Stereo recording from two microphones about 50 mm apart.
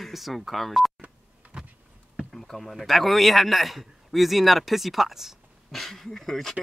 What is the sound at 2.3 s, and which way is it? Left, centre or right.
A man's voice, centre.